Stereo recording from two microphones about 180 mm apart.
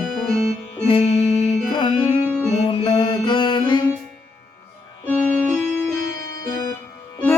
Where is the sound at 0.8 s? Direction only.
35° left (ahead or behind).